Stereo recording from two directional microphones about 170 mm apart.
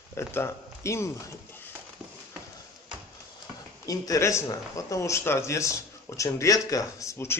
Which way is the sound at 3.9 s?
20° left (ahead or behind).